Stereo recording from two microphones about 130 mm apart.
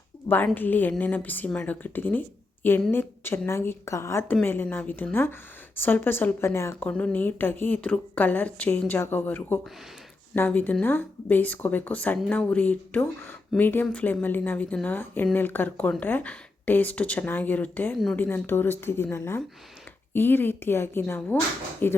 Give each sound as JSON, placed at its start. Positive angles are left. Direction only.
{"t": 0.3, "sound": "a woman's voice", "side_deg": 15}
{"t": 6.8, "sound": "speech", "side_deg": 10}
{"t": 17.9, "sound": "speech", "side_deg": 0}
{"t": 18.2, "sound": "speech", "side_deg": 15}